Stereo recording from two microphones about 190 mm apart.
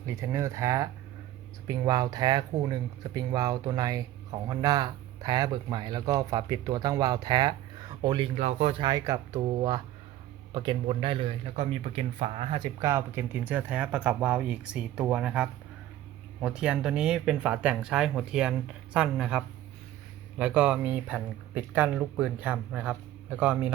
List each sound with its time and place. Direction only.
0.0 s speech: 15° right (ahead or behind)
12.9 s speech: 10° right (ahead or behind)